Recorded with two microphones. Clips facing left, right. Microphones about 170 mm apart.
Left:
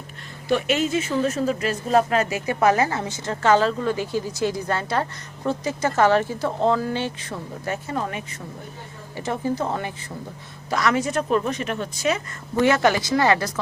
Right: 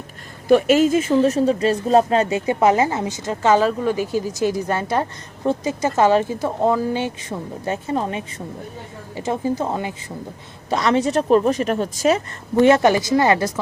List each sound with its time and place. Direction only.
0.4 s a woman's voice: 45° right (ahead or behind); by 9.9 s 15° right (ahead or behind)
10.7 s speech: 25° right (ahead or behind)
12.6 s a woman's voice: 25° right (ahead or behind)